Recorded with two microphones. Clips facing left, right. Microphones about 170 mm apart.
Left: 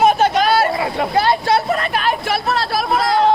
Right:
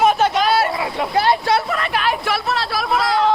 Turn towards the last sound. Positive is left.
turn(degrees=45)  # may be behind; listen again after turning